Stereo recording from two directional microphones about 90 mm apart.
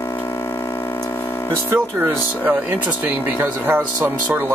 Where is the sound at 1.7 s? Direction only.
20° right (ahead or behind).